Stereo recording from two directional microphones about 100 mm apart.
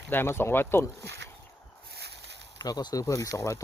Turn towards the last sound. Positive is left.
turn(degrees=35)  # may be behind; listen again after turning